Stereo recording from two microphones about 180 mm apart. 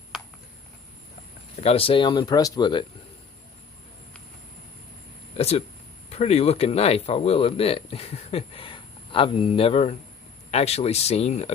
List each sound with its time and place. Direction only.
1.6 s speech: 30° left (ahead or behind)
5.4 s a sound: 35° left (ahead or behind)
6.1 s speech: 35° left (ahead or behind)